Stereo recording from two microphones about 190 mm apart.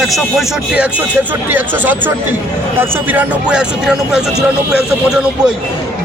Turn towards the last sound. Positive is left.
turn(degrees=-5)  # may be behind; listen again after turning